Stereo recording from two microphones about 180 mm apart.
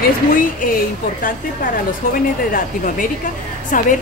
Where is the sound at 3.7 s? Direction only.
50° left (ahead or behind).